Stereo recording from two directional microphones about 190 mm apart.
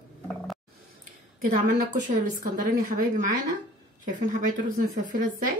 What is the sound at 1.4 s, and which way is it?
Speech, 45° right (ahead or behind).